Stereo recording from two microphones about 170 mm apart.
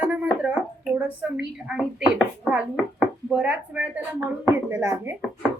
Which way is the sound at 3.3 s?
10° right (ahead or behind).